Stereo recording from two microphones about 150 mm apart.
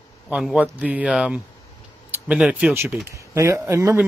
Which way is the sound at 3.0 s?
20° right (ahead or behind).